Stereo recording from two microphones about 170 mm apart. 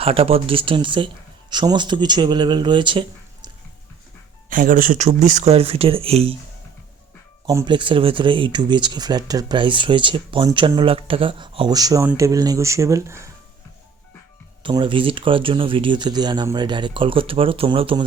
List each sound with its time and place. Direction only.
0.0 s speech: 35° right (ahead or behind)
4.4 s speech: 50° right (ahead or behind)
5.5 s speech: 35° right (ahead or behind)
7.4 s speech: 25° right (ahead or behind)
14.6 s speech: 30° right (ahead or behind)